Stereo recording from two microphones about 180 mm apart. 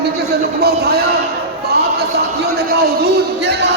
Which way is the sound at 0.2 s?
60° right (ahead or behind).